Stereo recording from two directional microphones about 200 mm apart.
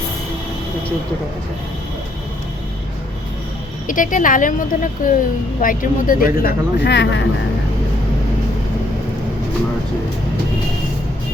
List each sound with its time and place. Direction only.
3.8 s a woman's voice: 40° left (ahead or behind); by 7.3 s 60° left (ahead or behind)